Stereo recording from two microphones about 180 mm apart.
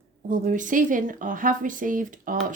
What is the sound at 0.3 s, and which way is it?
Speech, 45° right (ahead or behind).